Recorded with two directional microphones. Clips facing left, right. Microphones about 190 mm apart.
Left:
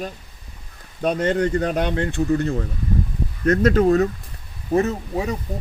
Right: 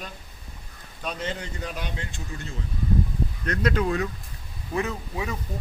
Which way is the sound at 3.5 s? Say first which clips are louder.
Left 10 dB; 45° left (ahead or behind).